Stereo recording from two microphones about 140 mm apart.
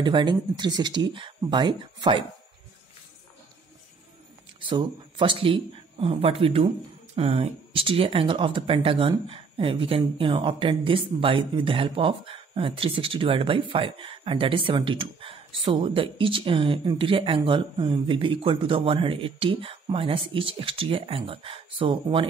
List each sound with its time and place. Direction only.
0.0 s speech: 35° right (ahead or behind)
4.6 s speech: 35° right (ahead or behind)